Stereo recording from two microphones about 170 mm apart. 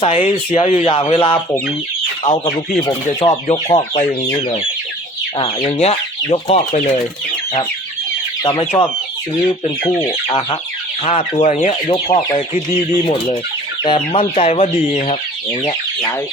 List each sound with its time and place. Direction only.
0.0 s chicken: 35° left (ahead or behind)
2.8 s speech: 20° left (ahead or behind)
3.7 s chicken: 40° left (ahead or behind)
5.8 s speech: 35° left (ahead or behind)
9.6 s speech: 25° left (ahead or behind)
11.0 s chicken: 35° left (ahead or behind)
13.8 s chicken: 30° left (ahead or behind)
15.6 s speech: 20° left (ahead or behind)